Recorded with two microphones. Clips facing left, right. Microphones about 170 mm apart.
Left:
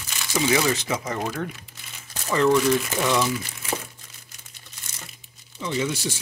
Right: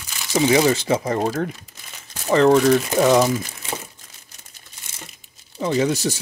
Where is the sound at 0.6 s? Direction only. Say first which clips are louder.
Right 6 dB; 35° right (ahead or behind).